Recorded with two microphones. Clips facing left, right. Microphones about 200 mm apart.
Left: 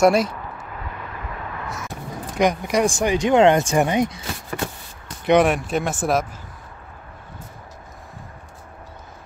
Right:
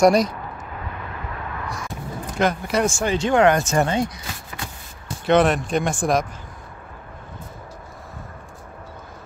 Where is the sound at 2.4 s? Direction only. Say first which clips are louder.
Left 2 dB; 15° left (ahead or behind).